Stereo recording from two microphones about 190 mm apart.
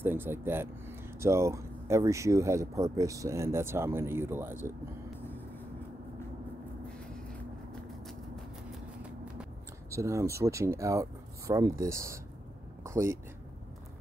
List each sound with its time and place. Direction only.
0.0 s speech: 10° right (ahead or behind)
9.0 s speech: 5° right (ahead or behind)